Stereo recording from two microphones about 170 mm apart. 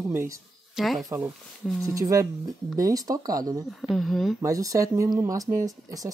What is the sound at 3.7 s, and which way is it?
Speech, centre (ahead or behind).